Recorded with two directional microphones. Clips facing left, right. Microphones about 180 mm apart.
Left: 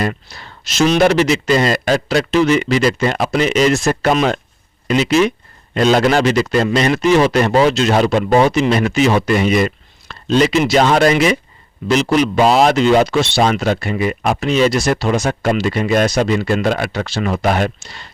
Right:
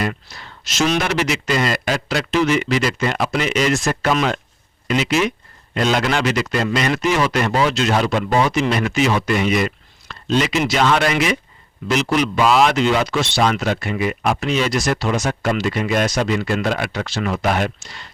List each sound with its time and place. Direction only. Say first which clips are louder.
0.0 s speech: left 3 dB; 30° left (ahead or behind)